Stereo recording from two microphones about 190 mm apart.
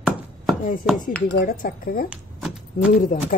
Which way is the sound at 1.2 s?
45° left (ahead or behind).